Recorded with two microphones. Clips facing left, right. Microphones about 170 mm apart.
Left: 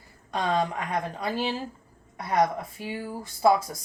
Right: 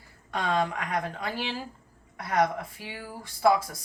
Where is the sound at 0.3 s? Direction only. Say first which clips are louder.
Left 1 dB; 25° left (ahead or behind).